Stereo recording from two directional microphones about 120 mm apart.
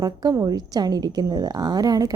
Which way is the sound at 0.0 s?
30° right (ahead or behind).